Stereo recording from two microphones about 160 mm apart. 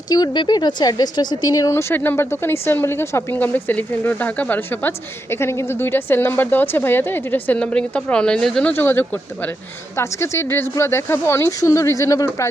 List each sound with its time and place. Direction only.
0.1 s a woman's voice: 25° left (ahead or behind); by 8.7 s 5° left (ahead or behind)
8.7 s a woman's voice: 15° left (ahead or behind)